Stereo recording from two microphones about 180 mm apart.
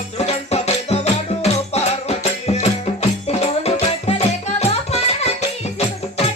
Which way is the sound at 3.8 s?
35° left (ahead or behind).